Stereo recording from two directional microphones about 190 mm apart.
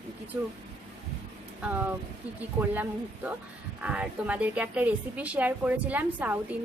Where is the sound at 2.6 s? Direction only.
10° right (ahead or behind).